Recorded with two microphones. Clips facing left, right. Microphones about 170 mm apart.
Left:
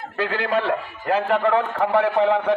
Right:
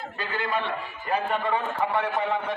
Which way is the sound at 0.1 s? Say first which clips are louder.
Left 8 dB; 90° left.